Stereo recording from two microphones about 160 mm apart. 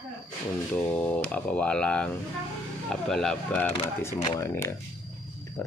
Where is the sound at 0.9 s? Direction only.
10° left (ahead or behind).